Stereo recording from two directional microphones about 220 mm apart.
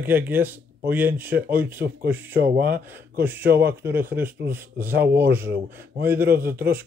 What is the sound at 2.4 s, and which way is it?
Speech, 45° right (ahead or behind).